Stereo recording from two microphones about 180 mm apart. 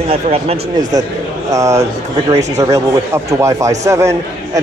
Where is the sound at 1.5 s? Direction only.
15° right (ahead or behind).